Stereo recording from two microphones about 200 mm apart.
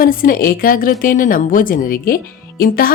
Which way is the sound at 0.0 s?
45° left (ahead or behind).